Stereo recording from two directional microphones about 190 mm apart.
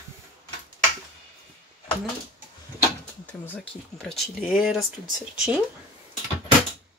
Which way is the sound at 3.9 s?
Centre (ahead or behind).